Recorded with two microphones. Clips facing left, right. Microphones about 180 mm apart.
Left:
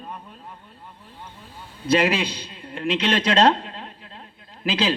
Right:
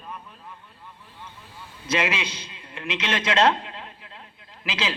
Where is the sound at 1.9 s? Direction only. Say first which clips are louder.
Left 6 dB; 35° left (ahead or behind).